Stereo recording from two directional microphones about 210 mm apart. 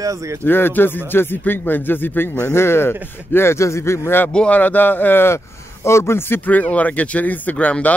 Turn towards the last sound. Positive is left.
turn(degrees=5)  # may be behind; listen again after turning